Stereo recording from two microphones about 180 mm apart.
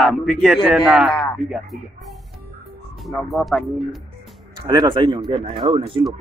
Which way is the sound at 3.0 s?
Centre (ahead or behind).